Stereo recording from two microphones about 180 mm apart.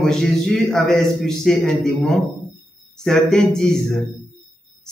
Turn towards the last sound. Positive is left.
turn(degrees=5)  # may be behind; listen again after turning